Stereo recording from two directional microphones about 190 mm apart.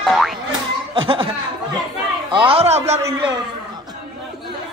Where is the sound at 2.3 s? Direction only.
25° right (ahead or behind).